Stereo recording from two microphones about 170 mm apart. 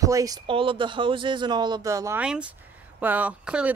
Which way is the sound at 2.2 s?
5° right (ahead or behind).